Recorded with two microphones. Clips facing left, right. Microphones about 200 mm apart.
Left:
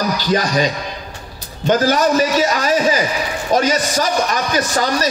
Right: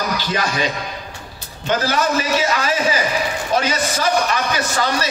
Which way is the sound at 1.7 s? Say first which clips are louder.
Left 5 dB; 40° left (ahead or behind).